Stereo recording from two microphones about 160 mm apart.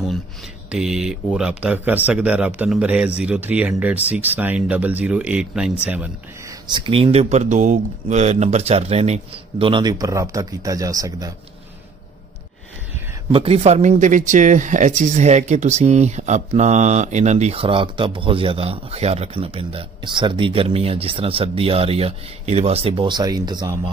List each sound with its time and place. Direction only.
0.7 s speech: 5° right (ahead or behind)
6.7 s a man's voice: 35° right (ahead or behind)
13.3 s a man's voice: 40° right (ahead or behind)